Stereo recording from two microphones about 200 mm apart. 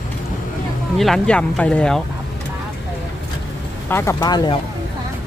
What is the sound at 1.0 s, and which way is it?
Speech, 5° left (ahead or behind).